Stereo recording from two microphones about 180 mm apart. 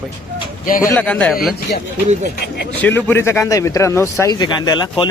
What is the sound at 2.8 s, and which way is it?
Speech, 10° left (ahead or behind).